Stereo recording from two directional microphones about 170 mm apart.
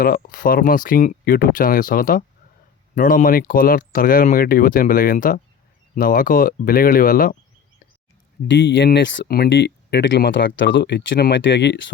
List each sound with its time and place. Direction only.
0.0 s speech: 55° left (ahead or behind)
8.4 s speech: 90° left